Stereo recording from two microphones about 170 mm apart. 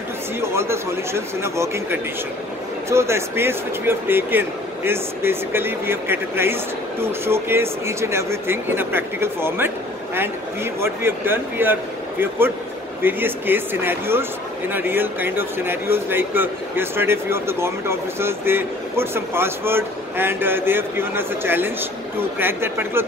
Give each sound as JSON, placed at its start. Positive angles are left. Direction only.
{"t": 0.4, "sound": "speech", "side_deg": -15}